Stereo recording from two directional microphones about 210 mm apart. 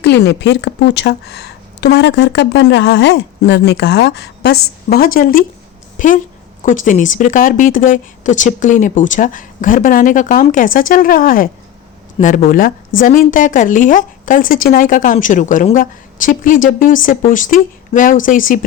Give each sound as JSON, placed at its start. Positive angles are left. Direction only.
{"t": 0.0, "sound": "a woman's voice", "side_deg": 50}